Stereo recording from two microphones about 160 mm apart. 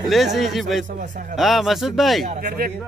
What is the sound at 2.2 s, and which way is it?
Speech, 65° right (ahead or behind).